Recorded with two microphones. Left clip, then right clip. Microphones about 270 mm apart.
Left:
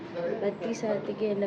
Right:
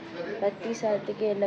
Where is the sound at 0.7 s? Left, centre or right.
Centre.